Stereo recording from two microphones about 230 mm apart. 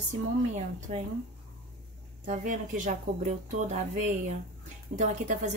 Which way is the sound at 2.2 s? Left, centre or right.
Right.